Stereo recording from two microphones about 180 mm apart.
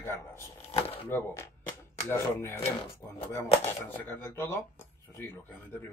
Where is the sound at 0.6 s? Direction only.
35° left (ahead or behind).